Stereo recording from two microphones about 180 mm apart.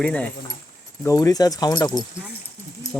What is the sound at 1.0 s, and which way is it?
Speech, 20° left (ahead or behind).